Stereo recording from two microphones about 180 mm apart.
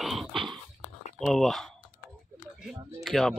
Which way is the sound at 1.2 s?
Centre (ahead or behind).